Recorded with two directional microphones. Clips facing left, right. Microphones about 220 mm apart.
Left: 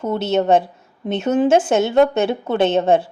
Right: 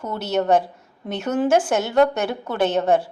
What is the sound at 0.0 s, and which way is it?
A woman's voice, 25° left (ahead or behind).